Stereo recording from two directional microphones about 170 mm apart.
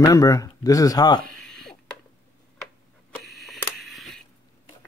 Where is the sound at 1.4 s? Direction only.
5° left (ahead or behind).